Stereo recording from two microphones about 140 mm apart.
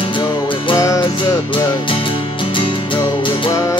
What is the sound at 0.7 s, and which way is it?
Music, 25° left (ahead or behind).